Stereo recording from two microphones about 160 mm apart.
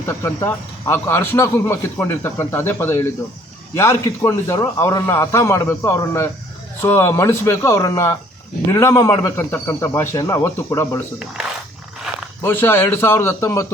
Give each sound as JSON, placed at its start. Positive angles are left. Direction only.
{"t": 0.2, "sound": "a man's voice", "side_deg": 15}
{"t": 12.4, "sound": "a man's voice", "side_deg": 15}